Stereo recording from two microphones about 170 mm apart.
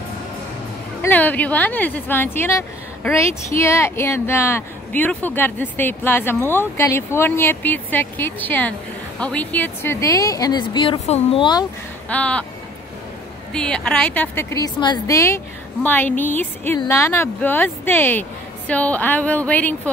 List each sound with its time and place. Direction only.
1.0 s speech: 10° left (ahead or behind); by 11.6 s 30° left (ahead or behind)
12.1 s speech: 5° left (ahead or behind)
13.5 s speech: 5° left (ahead or behind)